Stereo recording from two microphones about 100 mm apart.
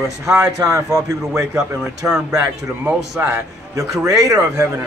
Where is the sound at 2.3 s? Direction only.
30° right (ahead or behind).